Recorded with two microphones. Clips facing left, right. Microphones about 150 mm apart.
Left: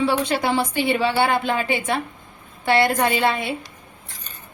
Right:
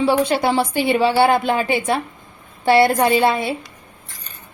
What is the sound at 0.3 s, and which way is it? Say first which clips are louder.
A woman's voice: right 3 dB; 30° right (ahead or behind).